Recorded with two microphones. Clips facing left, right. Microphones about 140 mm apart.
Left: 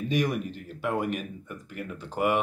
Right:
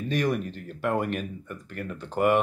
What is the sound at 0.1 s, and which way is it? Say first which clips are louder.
Speech: right 1 dB; 10° left (ahead or behind).